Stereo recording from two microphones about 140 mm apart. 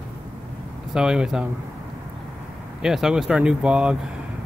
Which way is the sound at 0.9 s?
5° right (ahead or behind).